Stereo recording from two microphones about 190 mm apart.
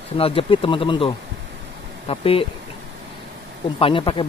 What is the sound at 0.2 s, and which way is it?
Speech, 30° left (ahead or behind).